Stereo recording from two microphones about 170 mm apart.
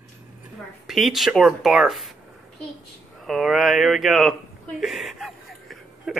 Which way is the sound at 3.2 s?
Centre (ahead or behind).